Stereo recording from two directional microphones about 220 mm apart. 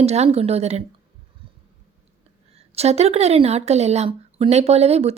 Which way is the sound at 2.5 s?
30° right (ahead or behind).